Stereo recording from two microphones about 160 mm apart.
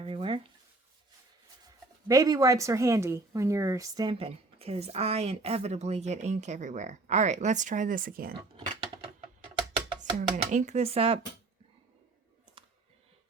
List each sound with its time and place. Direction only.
0.0 s a sound: 35° right (ahead or behind)
1.6 s speech: 20° right (ahead or behind); by 8.4 s 65° right (ahead or behind)
10.0 s speech: 50° right (ahead or behind)